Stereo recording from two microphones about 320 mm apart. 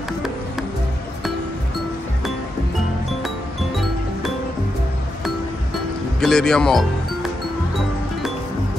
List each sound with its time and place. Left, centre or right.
6.2 s speech: centre